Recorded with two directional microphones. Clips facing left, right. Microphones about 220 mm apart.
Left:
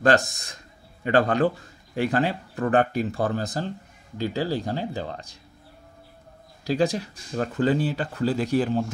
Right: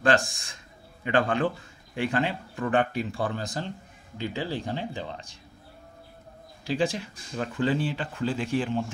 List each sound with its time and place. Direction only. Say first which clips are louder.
0.0 s a man's voice: left 3 dB; 40° left (ahead or behind)
6.6 s speech: left 4 dB; 40° left (ahead or behind)